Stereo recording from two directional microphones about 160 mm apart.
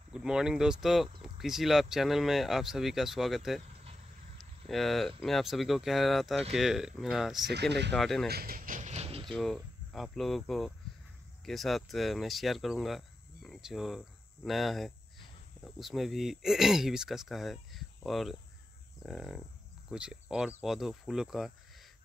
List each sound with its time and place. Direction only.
0.1 s speech: 5° right (ahead or behind)
4.6 s speech: centre (ahead or behind)
8.3 s a sound: 70° right (ahead or behind); by 9.3 s 35° right (ahead or behind)
9.3 s cricket: centre (ahead or behind)
11.4 s speech: centre (ahead or behind)